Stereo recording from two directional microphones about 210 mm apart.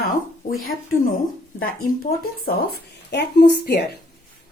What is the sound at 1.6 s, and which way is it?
Speech, 45° left (ahead or behind).